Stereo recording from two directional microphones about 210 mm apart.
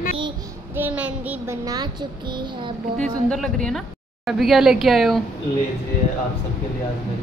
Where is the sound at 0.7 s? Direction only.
10° right (ahead or behind).